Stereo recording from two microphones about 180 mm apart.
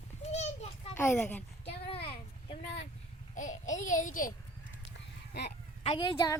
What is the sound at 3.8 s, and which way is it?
Speech, 45° left (ahead or behind).